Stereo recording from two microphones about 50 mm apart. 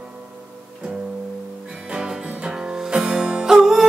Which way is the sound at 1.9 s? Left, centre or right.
Centre.